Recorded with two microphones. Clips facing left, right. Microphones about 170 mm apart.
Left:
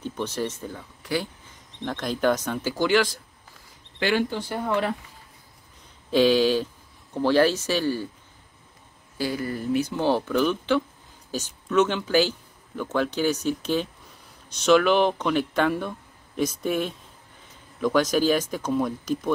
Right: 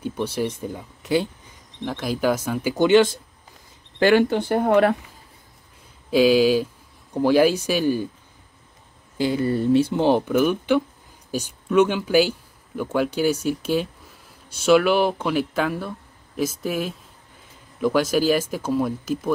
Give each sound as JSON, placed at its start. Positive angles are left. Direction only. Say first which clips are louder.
{"t": 0.0, "sound": "speech", "louder": "right 4 dB", "side_deg": -10}
{"t": 1.8, "sound": "speech", "louder": "right 2 dB", "side_deg": -10}
{"t": 2.7, "sound": "speech", "louder": "right 7 dB", "side_deg": -20}
{"t": 4.0, "sound": "speech", "louder": "right 7 dB", "side_deg": -65}
{"t": 6.0, "sound": "speech", "louder": "right 3 dB", "side_deg": -5}
{"t": 9.2, "sound": "speech", "louder": "right 7 dB", "side_deg": -25}